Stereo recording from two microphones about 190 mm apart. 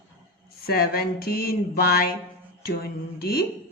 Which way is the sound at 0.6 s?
50° left (ahead or behind).